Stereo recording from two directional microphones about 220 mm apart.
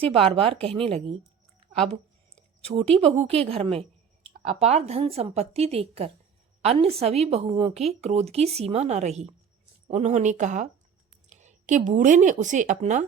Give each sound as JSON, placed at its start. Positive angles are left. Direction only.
{"t": 0.0, "sound": "speech", "side_deg": -25}
{"t": 2.6, "sound": "speech", "side_deg": -25}